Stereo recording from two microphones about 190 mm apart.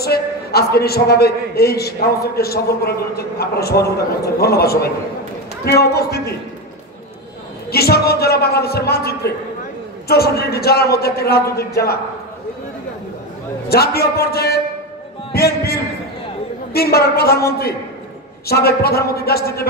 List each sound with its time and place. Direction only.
0.0 s a man's voice: 55° left (ahead or behind)
7.7 s a man's voice: 55° left (ahead or behind)
13.7 s a man's voice: 55° left (ahead or behind)